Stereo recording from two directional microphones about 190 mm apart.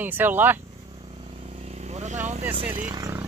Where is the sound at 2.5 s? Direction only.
30° right (ahead or behind).